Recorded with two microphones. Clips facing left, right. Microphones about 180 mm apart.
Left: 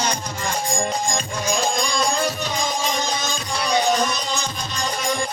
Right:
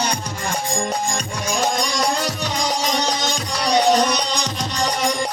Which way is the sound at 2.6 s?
80° right.